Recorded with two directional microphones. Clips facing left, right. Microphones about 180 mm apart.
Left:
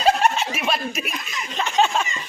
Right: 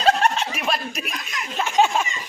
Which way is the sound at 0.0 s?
10° left (ahead or behind).